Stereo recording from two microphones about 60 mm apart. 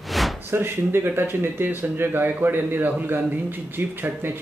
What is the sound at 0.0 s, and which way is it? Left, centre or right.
Slam, centre.